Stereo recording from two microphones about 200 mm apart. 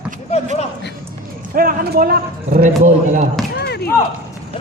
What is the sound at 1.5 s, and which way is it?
Speech, 45° right (ahead or behind).